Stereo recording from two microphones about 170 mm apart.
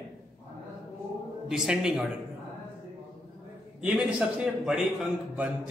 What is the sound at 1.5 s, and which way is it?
Speech, 5° right (ahead or behind).